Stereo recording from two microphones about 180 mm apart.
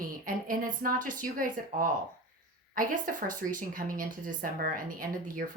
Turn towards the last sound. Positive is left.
turn(degrees=-50)  # may be behind; listen again after turning